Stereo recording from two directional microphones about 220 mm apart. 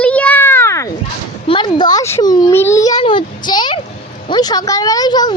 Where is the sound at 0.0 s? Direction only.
5° left (ahead or behind).